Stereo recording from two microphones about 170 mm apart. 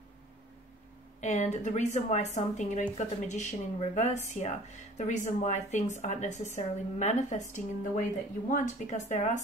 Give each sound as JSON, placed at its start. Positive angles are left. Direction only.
{"t": 1.2, "sound": "a woman's voice", "side_deg": 40}